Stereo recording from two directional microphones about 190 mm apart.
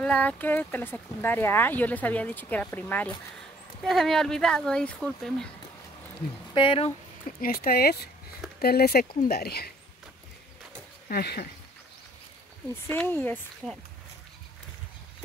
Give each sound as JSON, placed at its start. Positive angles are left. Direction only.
{"t": 0.0, "sound": "speech", "side_deg": 5}
{"t": 6.5, "sound": "speech", "side_deg": 30}
{"t": 7.4, "sound": "speech", "side_deg": 50}
{"t": 11.1, "sound": "speech", "side_deg": 55}
{"t": 12.8, "sound": "speech", "side_deg": 10}